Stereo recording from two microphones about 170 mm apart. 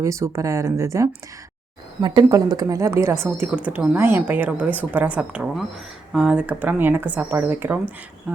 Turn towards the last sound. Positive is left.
turn(degrees=-10)  # may be behind; listen again after turning